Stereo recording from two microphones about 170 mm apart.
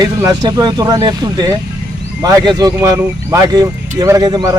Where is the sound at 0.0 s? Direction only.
20° right (ahead or behind).